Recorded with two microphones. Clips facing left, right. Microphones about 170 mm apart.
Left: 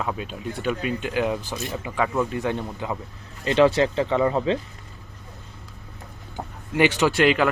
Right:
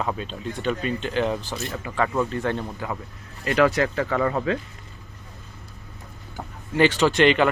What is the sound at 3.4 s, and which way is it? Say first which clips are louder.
Speech: left 2 dB; 25° left (ahead or behind).